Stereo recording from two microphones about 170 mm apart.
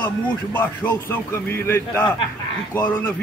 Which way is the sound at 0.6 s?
10° left (ahead or behind).